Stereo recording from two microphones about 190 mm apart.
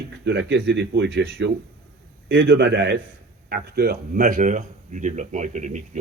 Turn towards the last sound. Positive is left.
turn(degrees=-40)  # may be behind; listen again after turning